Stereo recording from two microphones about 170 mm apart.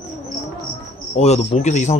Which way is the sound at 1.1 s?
40° left (ahead or behind).